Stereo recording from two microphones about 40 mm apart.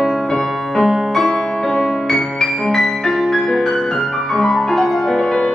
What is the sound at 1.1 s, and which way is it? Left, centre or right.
Music, centre.